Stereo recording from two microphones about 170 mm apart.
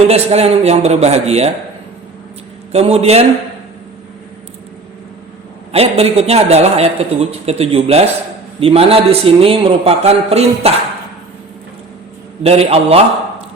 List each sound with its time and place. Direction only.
0.1 s a woman's voice: 35° right (ahead or behind)
2.7 s a woman's voice: 35° right (ahead or behind)
5.7 s a woman's voice: 35° right (ahead or behind)
12.4 s a woman's voice: 35° right (ahead or behind)